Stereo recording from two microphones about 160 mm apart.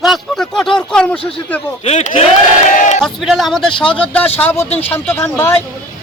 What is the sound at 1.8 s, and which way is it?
Speech, 50° left (ahead or behind).